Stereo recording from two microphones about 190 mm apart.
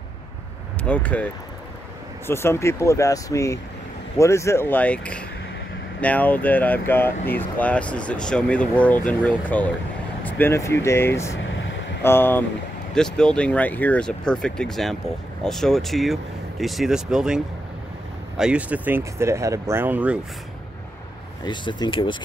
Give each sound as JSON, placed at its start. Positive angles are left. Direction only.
{"t": 0.8, "sound": "speech", "side_deg": 10}
{"t": 11.4, "sound": "vehicle", "side_deg": 80}
{"t": 12.0, "sound": "speech", "side_deg": 10}
{"t": 18.4, "sound": "speech", "side_deg": -5}
{"t": 21.5, "sound": "speech", "side_deg": 25}